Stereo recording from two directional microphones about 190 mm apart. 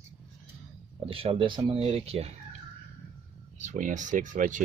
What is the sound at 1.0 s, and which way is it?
Speech, 30° right (ahead or behind).